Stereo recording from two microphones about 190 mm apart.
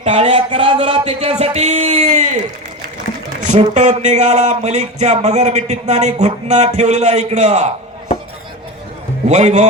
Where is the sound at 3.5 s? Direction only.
35° right (ahead or behind).